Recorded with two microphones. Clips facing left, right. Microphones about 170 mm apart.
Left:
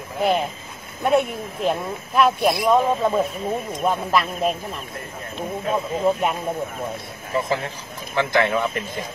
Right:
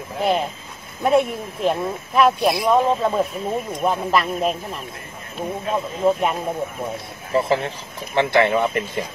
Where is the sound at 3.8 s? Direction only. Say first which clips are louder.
Right 1 dB; centre (ahead or behind).